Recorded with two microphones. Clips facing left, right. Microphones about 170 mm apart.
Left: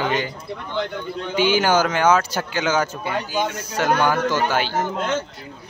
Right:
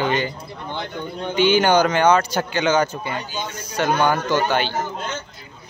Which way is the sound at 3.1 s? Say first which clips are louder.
Left 5 dB; 75° left (ahead or behind).